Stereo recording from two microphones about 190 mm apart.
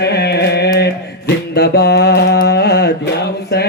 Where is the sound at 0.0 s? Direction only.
60° left (ahead or behind).